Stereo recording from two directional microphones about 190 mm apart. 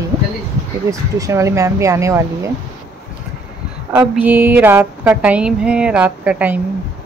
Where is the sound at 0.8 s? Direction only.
15° right (ahead or behind).